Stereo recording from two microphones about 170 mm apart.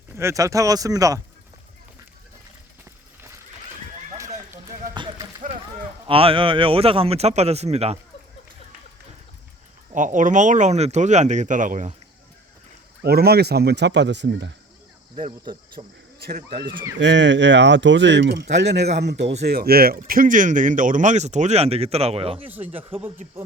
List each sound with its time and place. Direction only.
0.2 s speech: 15° right (ahead or behind)
6.1 s speech: 30° right (ahead or behind)
9.9 s speech: 50° right (ahead or behind)
13.0 s speech: 65° right (ahead or behind); by 14.5 s 90° right
15.8 s speech: 45° right (ahead or behind)
16.2 s speech: 65° right (ahead or behind)
16.6 s speech: 30° right (ahead or behind)
16.9 s speech: 90° right
19.5 s speech: 65° right (ahead or behind); by 22.4 s 35° right (ahead or behind)
22.4 s speech: 10° right (ahead or behind)